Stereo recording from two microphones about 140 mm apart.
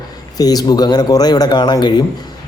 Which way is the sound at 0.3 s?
30° left (ahead or behind).